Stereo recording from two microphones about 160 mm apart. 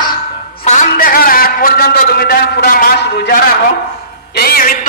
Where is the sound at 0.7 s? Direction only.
55° left (ahead or behind).